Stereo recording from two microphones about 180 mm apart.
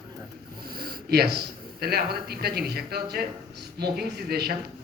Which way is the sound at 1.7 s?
60° right (ahead or behind).